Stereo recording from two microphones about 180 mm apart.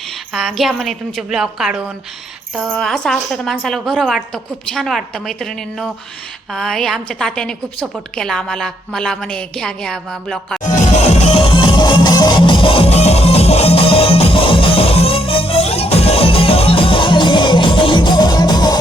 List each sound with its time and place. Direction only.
0.3 s a woman's voice: centre (ahead or behind)
10.6 s music: 40° left (ahead or behind); by 18.8 s 20° left (ahead or behind)